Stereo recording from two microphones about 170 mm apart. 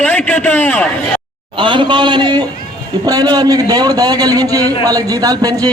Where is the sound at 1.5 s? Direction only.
30° right (ahead or behind).